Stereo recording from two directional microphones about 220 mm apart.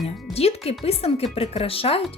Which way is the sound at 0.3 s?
25° left (ahead or behind).